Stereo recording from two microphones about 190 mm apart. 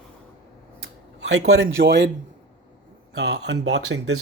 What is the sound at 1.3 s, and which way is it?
Speech, 90° right.